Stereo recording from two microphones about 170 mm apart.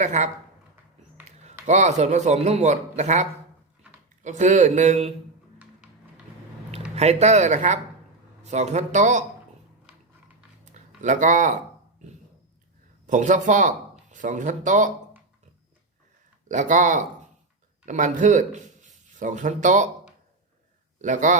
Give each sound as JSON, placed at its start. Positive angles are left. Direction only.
{"t": 0.0, "sound": "speech", "side_deg": -45}
{"t": 1.6, "sound": "speech", "side_deg": -45}
{"t": 6.9, "sound": "speech", "side_deg": -40}
{"t": 10.7, "sound": "speech", "side_deg": -45}
{"t": 13.1, "sound": "speech", "side_deg": -45}
{"t": 16.5, "sound": "speech", "side_deg": -50}
{"t": 21.0, "sound": "speech", "side_deg": -45}